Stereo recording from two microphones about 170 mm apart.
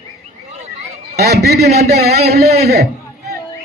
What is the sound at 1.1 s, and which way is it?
A man's voice, 70° right (ahead or behind).